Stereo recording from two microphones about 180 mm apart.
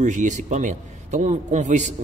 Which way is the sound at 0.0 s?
45° right (ahead or behind).